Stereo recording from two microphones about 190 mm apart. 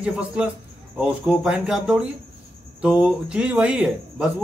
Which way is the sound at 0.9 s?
5° right (ahead or behind).